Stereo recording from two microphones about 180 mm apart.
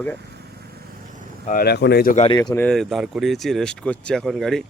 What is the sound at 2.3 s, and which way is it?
Speech, 25° left (ahead or behind).